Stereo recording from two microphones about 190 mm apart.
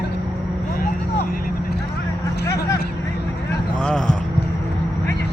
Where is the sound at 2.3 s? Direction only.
60° left (ahead or behind).